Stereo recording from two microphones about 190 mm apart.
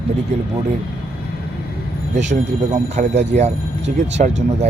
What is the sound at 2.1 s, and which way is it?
Speech, 40° right (ahead or behind).